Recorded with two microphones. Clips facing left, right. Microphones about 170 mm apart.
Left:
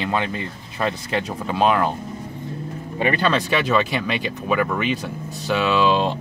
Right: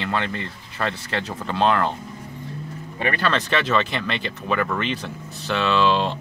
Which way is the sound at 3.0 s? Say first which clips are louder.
Left 3 dB; 20° left (ahead or behind).